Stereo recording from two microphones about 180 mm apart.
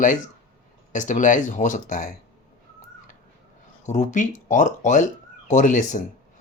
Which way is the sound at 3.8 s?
40° left (ahead or behind).